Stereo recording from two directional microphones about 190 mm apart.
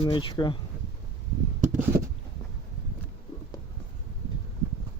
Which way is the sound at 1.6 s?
45° right (ahead or behind).